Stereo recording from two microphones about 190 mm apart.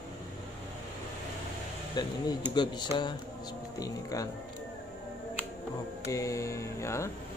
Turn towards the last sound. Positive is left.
turn(degrees=15)  # may be behind; listen again after turning